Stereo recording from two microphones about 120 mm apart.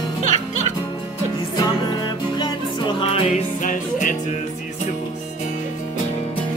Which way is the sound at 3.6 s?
90° left.